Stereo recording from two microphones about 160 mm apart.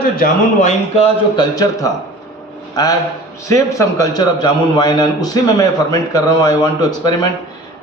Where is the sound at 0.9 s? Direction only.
35° left (ahead or behind).